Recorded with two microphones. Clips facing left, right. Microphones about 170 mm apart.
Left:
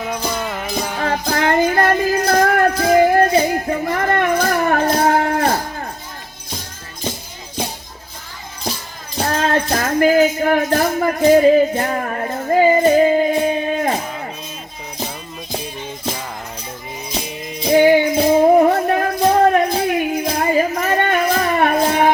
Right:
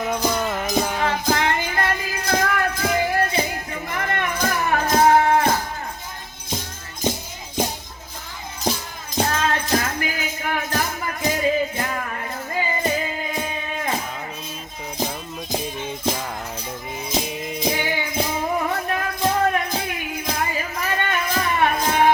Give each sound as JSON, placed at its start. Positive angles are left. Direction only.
{"t": 0.3, "sound": "music", "side_deg": 5}
{"t": 0.7, "sound": "music", "side_deg": -10}
{"t": 1.0, "sound": "music", "side_deg": 45}
{"t": 9.2, "sound": "music", "side_deg": 45}
{"t": 9.6, "sound": "a sound", "side_deg": 45}
{"t": 17.7, "sound": "music", "side_deg": 50}